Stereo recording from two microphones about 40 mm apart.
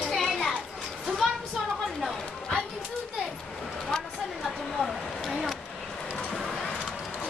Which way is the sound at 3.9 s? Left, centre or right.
Centre.